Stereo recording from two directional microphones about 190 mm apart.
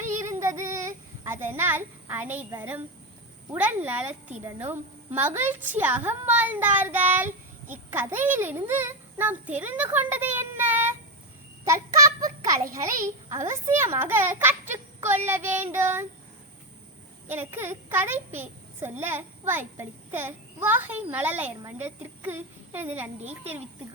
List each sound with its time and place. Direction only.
0.2 s child singing: 15° right (ahead or behind)
3.5 s a woman's voice: 10° right (ahead or behind)
11.6 s child singing: 15° right (ahead or behind)
12.7 s a woman's voice: 15° right (ahead or behind)
17.2 s a woman's voice: 10° right (ahead or behind)